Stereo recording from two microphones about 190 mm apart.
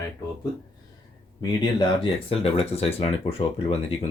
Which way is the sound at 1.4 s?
25° left (ahead or behind).